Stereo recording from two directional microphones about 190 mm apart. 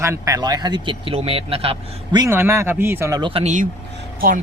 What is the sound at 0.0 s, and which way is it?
Speech, 15° right (ahead or behind).